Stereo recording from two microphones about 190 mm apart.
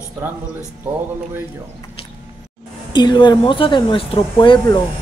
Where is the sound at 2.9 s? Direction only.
25° left (ahead or behind).